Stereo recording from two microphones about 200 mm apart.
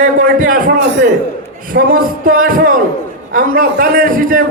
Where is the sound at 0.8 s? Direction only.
60° right (ahead or behind).